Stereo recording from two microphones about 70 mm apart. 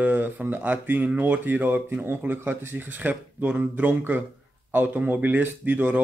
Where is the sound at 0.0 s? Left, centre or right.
Right.